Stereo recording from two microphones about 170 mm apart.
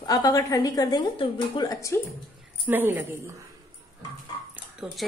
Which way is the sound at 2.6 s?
10° right (ahead or behind).